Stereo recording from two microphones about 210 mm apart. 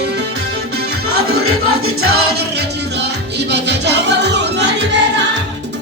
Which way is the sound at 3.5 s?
55° right (ahead or behind).